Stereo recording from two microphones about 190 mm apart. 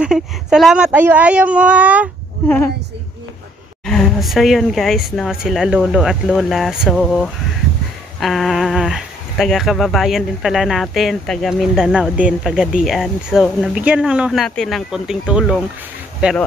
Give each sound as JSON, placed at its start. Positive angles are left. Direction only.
{"t": 0.0, "sound": "speech", "side_deg": -5}
{"t": 2.4, "sound": "a woman's voice", "side_deg": 10}
{"t": 3.8, "sound": "speech", "side_deg": 0}